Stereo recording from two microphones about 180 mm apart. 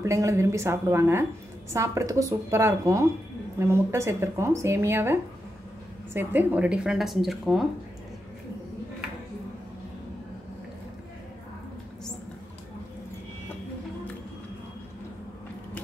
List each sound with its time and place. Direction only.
0.0 s speech: 15° right (ahead or behind); by 7.6 s centre (ahead or behind)